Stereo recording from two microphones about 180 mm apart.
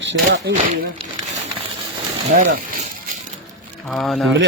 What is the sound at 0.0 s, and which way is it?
Speech, 80° right.